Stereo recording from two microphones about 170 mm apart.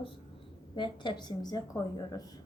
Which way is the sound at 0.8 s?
25° left (ahead or behind).